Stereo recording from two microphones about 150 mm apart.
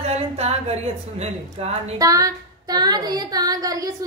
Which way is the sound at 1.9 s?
25° right (ahead or behind).